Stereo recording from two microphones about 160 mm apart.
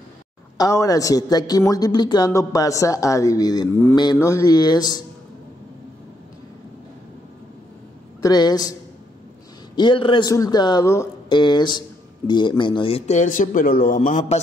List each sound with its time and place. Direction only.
0.6 s a man's voice: 20° left (ahead or behind)
8.2 s a man's voice: 25° left (ahead or behind)
9.8 s a man's voice: 30° left (ahead or behind); by 14.4 s 55° left (ahead or behind)